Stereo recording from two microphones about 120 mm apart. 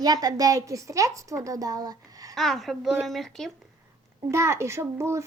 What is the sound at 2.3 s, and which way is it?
A woman's voice, centre (ahead or behind).